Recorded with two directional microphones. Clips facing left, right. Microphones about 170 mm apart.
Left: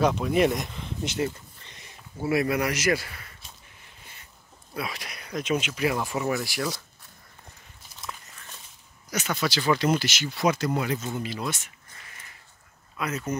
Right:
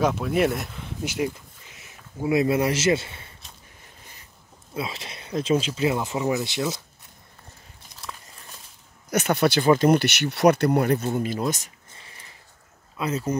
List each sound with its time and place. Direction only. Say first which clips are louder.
0.0 s a sound: even; 5° right (ahead or behind)
2.2 s speech: right 4 dB; 20° right (ahead or behind)
4.7 s speech: right 2 dB; 25° right (ahead or behind)
9.1 s speech: right 7 dB; 60° right (ahead or behind); by 11.7 s 40° right (ahead or behind)
11.9 s a sound: even; 30° right (ahead or behind)
12.9 s speech: right 4 dB; 30° right (ahead or behind)